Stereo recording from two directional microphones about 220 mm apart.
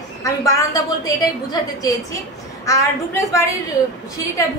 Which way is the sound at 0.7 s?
15° left (ahead or behind).